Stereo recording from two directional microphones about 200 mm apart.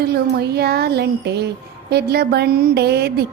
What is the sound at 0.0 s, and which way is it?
Speech, 55° right (ahead or behind).